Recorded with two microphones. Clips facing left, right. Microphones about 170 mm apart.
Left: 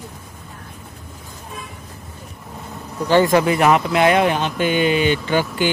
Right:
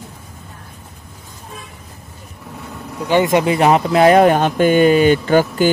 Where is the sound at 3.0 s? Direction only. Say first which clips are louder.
Even; 20° right (ahead or behind); by 5.6 s 45° right (ahead or behind).